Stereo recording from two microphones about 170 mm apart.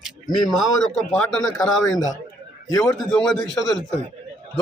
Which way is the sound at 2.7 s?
20° left (ahead or behind).